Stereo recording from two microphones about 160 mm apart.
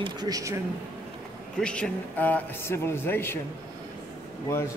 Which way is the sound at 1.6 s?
5° left (ahead or behind).